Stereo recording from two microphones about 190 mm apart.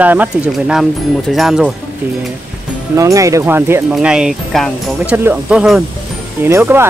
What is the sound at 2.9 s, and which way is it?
Speech, 15° right (ahead or behind).